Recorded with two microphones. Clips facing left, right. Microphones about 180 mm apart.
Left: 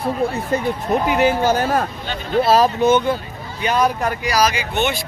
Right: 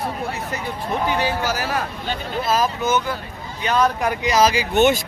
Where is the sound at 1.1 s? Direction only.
20° left (ahead or behind).